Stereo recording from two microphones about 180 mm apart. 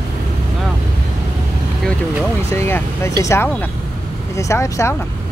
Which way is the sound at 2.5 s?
15° left (ahead or behind).